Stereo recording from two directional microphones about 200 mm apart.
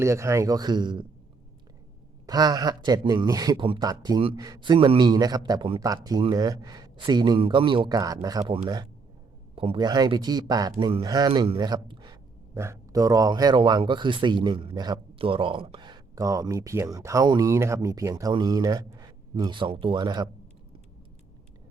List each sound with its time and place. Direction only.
0.0 s speech: 15° right (ahead or behind)
2.2 s speech: 20° right (ahead or behind)